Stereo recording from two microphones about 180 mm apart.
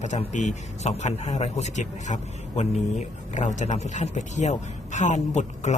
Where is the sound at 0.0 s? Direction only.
40° left (ahead or behind).